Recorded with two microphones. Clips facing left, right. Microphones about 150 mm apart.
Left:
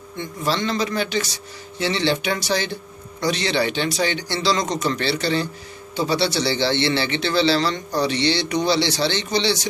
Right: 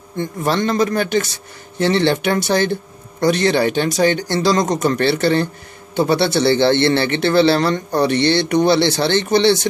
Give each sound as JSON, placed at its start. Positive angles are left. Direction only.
{"t": 0.2, "sound": "a man's voice", "side_deg": -55}